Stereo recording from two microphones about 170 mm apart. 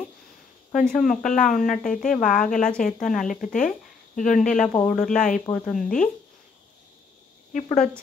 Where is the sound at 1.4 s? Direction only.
50° left (ahead or behind).